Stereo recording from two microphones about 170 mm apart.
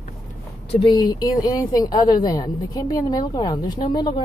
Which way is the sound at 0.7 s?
30° left (ahead or behind).